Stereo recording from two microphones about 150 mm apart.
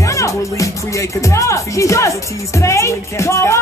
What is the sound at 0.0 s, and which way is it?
Speech, 20° left (ahead or behind).